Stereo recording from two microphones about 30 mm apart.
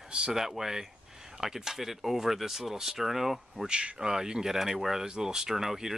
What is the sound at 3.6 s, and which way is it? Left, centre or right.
Speech, right.